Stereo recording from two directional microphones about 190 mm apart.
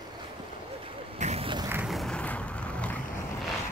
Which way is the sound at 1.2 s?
30° right (ahead or behind).